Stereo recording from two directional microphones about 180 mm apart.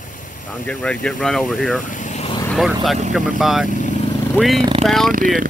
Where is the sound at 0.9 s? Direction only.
5° left (ahead or behind).